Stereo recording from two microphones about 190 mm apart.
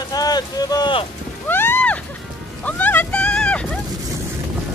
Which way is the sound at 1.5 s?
10° left (ahead or behind).